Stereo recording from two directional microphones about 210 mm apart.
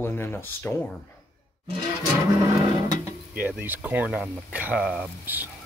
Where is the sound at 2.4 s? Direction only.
15° right (ahead or behind).